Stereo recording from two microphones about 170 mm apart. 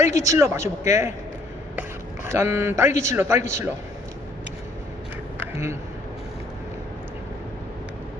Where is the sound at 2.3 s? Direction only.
15° right (ahead or behind).